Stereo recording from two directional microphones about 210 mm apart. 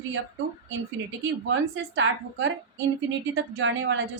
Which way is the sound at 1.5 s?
65° right (ahead or behind).